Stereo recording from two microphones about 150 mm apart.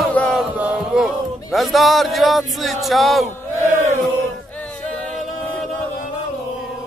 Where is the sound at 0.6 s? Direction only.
5° right (ahead or behind).